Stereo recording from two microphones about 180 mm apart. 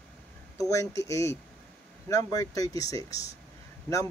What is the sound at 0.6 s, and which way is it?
Speech, 15° left (ahead or behind).